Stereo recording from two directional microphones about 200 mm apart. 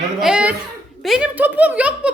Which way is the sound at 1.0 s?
5° right (ahead or behind).